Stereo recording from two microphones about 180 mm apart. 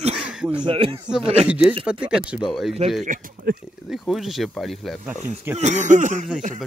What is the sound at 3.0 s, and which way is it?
Speech, 50° right (ahead or behind).